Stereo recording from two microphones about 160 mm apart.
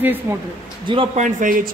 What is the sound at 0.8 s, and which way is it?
Speech, 30° right (ahead or behind).